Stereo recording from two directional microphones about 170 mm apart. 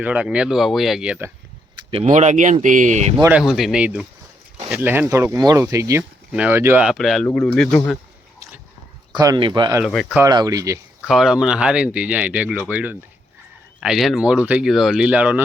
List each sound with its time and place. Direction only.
0.0 s speech: 5° right (ahead or behind)
2.0 s speech: 45° right (ahead or behind)
3.3 s speech: 5° right (ahead or behind)
9.1 s speech: 25° right (ahead or behind)
9.8 s speech: centre (ahead or behind)
10.2 s speech: 25° right (ahead or behind)
11.0 s speech: 5° right (ahead or behind)